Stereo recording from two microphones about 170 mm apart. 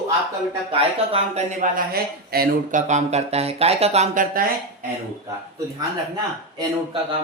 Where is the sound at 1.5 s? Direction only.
65° right (ahead or behind).